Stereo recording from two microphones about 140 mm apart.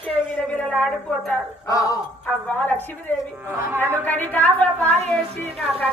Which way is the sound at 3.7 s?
15° right (ahead or behind).